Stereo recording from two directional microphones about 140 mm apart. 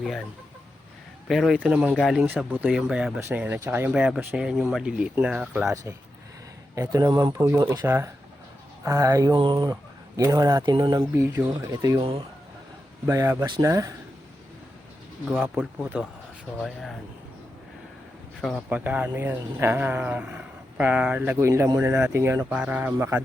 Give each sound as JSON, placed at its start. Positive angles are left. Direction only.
{"t": 1.3, "sound": "speech", "side_deg": 0}
{"t": 2.2, "sound": "speech", "side_deg": -10}
{"t": 3.2, "sound": "speech", "side_deg": -15}
{"t": 5.6, "sound": "speech", "side_deg": -25}
{"t": 11.0, "sound": "speech", "side_deg": -15}
{"t": 11.9, "sound": "speech", "side_deg": -45}
{"t": 13.1, "sound": "speech", "side_deg": -20}
{"t": 15.4, "sound": "speech", "side_deg": -5}
{"t": 18.7, "sound": "speech", "side_deg": -10}
{"t": 22.4, "sound": "speech", "side_deg": -10}